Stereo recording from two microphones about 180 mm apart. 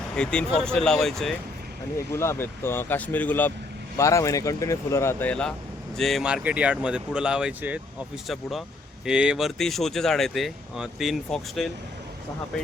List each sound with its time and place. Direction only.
0.2 s speech: 5° left (ahead or behind)
2.1 s speech: 15° left (ahead or behind)